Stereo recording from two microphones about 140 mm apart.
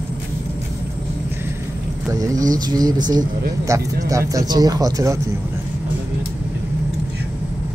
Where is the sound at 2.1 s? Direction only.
25° right (ahead or behind).